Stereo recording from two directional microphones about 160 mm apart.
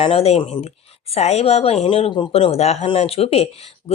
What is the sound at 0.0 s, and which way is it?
Speech, 35° left (ahead or behind).